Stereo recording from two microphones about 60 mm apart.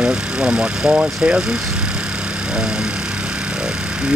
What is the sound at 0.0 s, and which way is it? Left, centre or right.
Speech, centre.